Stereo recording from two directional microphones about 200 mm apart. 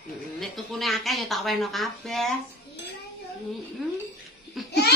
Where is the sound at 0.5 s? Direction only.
Centre (ahead or behind).